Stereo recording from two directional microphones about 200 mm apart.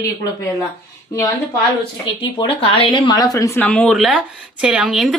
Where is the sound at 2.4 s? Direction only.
25° left (ahead or behind).